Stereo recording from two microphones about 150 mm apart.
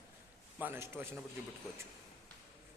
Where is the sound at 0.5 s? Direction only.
15° right (ahead or behind).